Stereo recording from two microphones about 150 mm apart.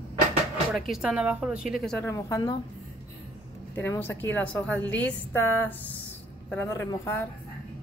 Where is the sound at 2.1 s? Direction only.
20° left (ahead or behind).